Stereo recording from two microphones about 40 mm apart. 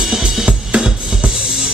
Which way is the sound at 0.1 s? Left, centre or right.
Centre.